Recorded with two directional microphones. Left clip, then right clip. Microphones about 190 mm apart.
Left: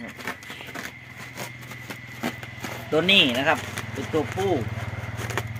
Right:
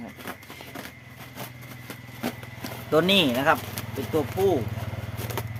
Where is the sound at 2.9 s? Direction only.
25° right (ahead or behind).